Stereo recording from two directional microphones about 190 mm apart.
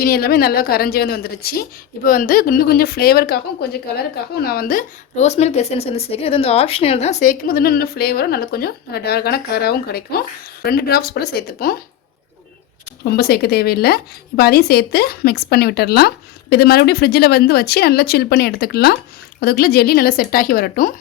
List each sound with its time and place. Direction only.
0.0 s a woman's voice: 55° left (ahead or behind)
13.1 s a woman's voice: 55° left (ahead or behind)